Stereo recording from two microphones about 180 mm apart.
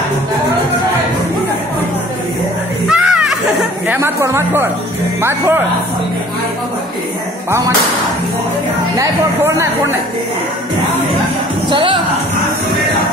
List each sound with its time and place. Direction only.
2.9 s a sound: 5° right (ahead or behind)
3.8 s speech: 10° right (ahead or behind)
8.9 s speech: 15° right (ahead or behind)
11.7 s a woman's voice: 30° right (ahead or behind)